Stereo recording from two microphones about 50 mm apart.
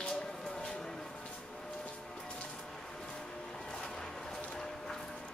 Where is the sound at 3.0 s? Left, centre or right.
Centre.